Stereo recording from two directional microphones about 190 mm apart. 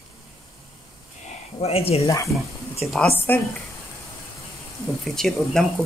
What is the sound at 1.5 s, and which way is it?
Speech, 30° left (ahead or behind).